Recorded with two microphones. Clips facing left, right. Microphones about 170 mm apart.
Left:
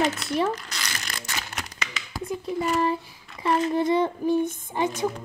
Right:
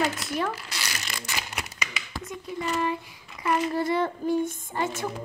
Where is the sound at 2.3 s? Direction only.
35° left (ahead or behind).